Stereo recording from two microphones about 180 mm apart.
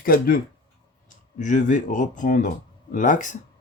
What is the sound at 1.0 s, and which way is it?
Speech, 45° left (ahead or behind).